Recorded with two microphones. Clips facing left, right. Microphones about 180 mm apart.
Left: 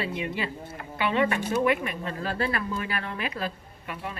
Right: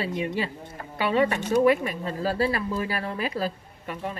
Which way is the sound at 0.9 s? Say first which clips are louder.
Right 2 dB; 35° right (ahead or behind).